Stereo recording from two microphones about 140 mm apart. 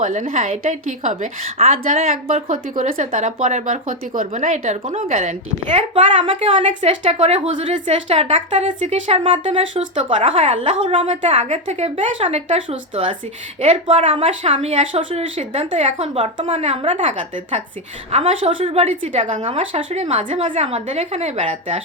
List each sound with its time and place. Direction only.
0.0 s speech: 65° right (ahead or behind)
1.5 s speech: 45° right (ahead or behind)
2.2 s speech: 70° right (ahead or behind)
5.9 s a woman's voice: 40° right (ahead or behind)
6.6 s speech: 55° right (ahead or behind)
9.0 s a woman's voice: 40° right (ahead or behind)
11.2 s speech: 55° right (ahead or behind)
18.1 s speech: 45° right (ahead or behind)
19.4 s speech: 45° right (ahead or behind)